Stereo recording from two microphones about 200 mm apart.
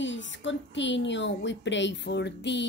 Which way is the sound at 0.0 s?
65° left (ahead or behind).